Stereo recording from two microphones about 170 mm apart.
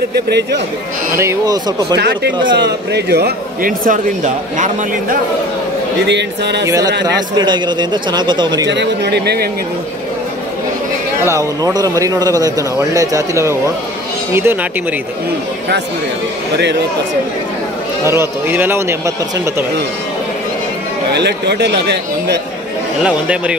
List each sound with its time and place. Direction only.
0.1 s speech: 80° right
1.1 s speech: 15° right (ahead or behind)
2.0 s a man's voice: 75° right (ahead or behind); by 5.2 s 45° right (ahead or behind)
6.0 s speech: 85° right
6.6 s speech: 20° right (ahead or behind)
8.6 s speech: 90° right; by 9.5 s 75° right (ahead or behind)
11.2 s speech: 20° right (ahead or behind)
18.0 s speech: 15° right (ahead or behind)
21.1 s speech: 80° right
23.0 s speech: 5° right (ahead or behind)